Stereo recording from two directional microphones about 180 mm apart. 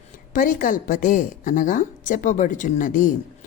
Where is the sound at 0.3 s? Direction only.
50° left (ahead or behind).